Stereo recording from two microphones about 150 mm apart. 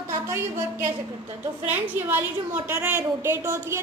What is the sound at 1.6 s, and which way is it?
A woman's voice, 15° right (ahead or behind).